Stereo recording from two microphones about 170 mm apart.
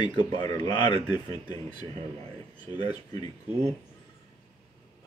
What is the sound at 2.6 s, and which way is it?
Speech, 25° left (ahead or behind).